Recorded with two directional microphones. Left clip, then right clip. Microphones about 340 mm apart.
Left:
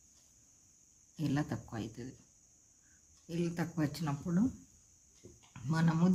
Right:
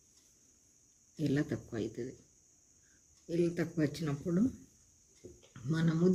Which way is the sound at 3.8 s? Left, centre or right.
Left.